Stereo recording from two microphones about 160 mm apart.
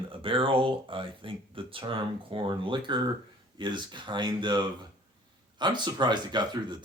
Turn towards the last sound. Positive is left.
turn(degrees=-25)  # may be behind; listen again after turning